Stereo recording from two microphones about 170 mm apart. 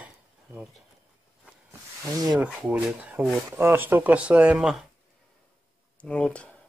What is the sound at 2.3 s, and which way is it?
Speech, 5° right (ahead or behind).